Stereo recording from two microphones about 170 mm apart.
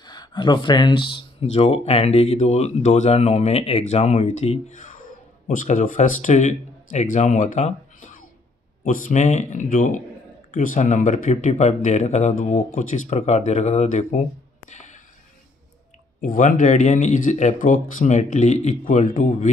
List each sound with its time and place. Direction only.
0.0 s speech: 25° left (ahead or behind); by 14.2 s 45° left (ahead or behind)
14.7 s a sound: 45° left (ahead or behind)
16.2 s speech: 50° left (ahead or behind)